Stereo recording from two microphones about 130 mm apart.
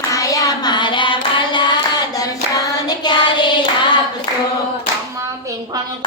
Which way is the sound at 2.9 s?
35° left (ahead or behind).